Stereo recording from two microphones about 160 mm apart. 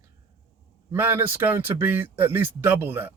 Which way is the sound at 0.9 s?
15° right (ahead or behind).